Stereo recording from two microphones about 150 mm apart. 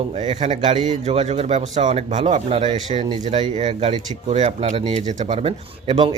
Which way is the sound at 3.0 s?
30° right (ahead or behind).